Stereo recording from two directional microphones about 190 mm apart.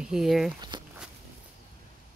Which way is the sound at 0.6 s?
25° right (ahead or behind).